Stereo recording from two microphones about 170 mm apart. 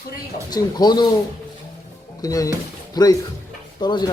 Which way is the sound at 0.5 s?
25° left (ahead or behind).